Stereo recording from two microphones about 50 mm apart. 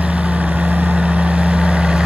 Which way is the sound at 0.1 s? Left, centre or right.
Right.